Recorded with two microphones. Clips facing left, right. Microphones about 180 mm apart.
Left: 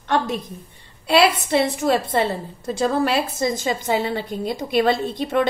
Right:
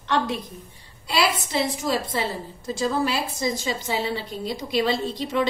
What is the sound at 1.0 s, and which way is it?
A woman's voice, 60° left (ahead or behind).